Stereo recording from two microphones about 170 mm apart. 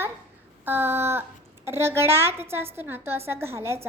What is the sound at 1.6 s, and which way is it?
A woman's voice, 15° right (ahead or behind).